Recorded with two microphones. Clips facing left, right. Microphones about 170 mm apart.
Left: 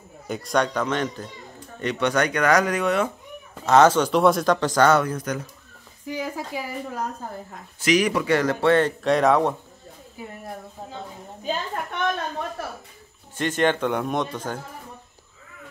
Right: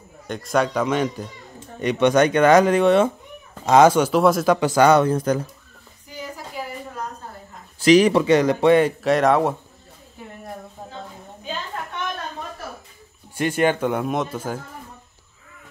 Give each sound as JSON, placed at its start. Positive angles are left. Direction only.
{"t": 0.3, "sound": "speech", "side_deg": 0}
{"t": 3.6, "sound": "speech", "side_deg": -10}
{"t": 5.0, "sound": "speech", "side_deg": -30}
{"t": 6.0, "sound": "a sound", "side_deg": 90}
{"t": 7.8, "sound": "speech", "side_deg": -30}
{"t": 10.2, "sound": "a sound", "side_deg": 5}
{"t": 13.4, "sound": "a man's voice", "side_deg": -10}